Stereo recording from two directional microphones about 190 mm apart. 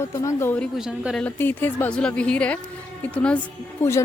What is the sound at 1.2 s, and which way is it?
A woman's voice, 10° left (ahead or behind).